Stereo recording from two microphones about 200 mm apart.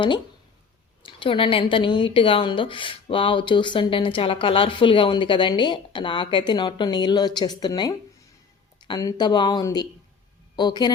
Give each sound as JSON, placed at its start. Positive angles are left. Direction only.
{"t": 1.0, "sound": "speech", "side_deg": 25}